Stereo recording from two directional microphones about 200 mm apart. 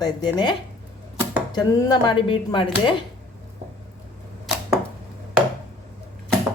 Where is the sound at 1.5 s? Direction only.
20° left (ahead or behind).